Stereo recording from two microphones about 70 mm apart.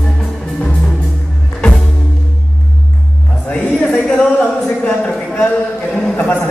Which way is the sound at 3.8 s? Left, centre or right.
Centre.